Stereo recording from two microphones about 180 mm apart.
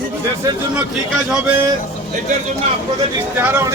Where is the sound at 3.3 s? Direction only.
10° right (ahead or behind).